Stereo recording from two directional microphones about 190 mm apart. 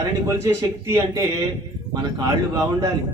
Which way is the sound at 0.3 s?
15° right (ahead or behind).